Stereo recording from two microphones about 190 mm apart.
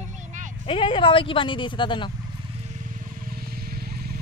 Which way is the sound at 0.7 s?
30° left (ahead or behind).